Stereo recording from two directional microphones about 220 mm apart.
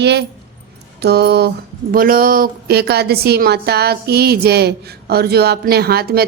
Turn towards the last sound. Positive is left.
turn(degrees=-45)  # may be behind; listen again after turning